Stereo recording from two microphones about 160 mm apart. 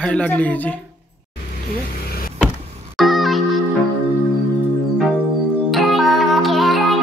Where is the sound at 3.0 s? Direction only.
Centre (ahead or behind).